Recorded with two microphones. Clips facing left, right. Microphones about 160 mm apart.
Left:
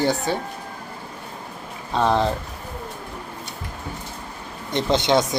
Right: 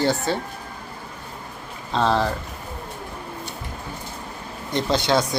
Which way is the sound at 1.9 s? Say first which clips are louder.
Left 1 dB; 15° left (ahead or behind).